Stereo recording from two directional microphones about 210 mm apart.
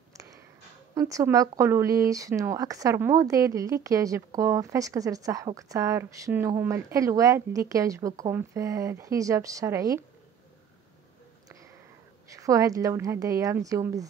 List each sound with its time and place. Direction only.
0.9 s speech: 15° right (ahead or behind)
12.4 s speech: 15° right (ahead or behind)